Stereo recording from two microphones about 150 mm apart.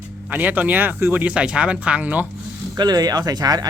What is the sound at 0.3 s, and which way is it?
Speech, 10° right (ahead or behind).